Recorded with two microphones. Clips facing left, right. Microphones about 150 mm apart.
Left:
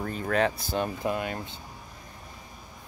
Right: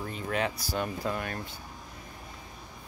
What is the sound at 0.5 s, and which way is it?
Speech, 25° left (ahead or behind).